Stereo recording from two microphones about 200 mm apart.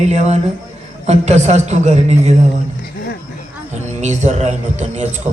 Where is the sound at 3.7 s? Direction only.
35° right (ahead or behind).